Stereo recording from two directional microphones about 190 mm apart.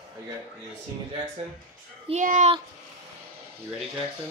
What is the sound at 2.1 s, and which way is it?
Speech, 40° right (ahead or behind).